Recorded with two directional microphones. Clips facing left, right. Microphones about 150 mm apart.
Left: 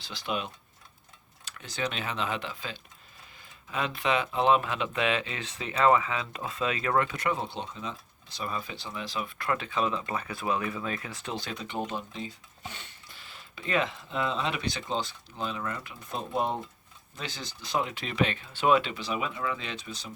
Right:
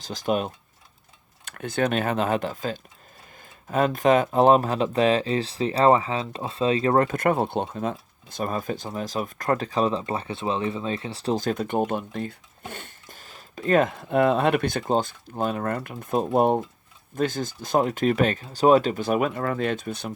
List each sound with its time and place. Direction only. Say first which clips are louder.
0.0 s speech: right 8 dB; 45° right (ahead or behind)